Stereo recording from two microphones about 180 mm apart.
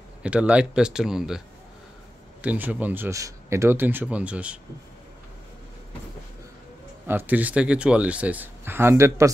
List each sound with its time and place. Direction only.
0.2 s speech: 5° right (ahead or behind)
2.4 s speech: 10° right (ahead or behind)
7.1 s speech: 10° right (ahead or behind)